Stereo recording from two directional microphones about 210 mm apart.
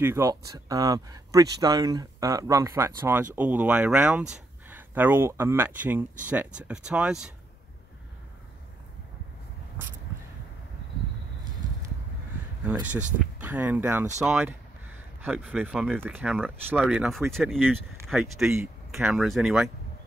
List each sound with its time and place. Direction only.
0.0 s speech: 15° right (ahead or behind)
12.6 s speech: 10° right (ahead or behind)